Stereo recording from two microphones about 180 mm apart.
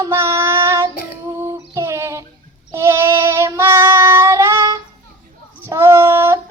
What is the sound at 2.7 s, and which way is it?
Child singing, 15° right (ahead or behind).